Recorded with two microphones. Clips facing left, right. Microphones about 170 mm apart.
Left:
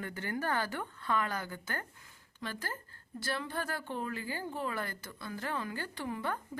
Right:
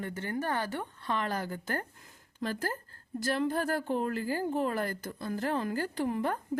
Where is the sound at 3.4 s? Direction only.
40° right (ahead or behind).